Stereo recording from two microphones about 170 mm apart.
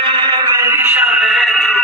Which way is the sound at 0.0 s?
25° right (ahead or behind).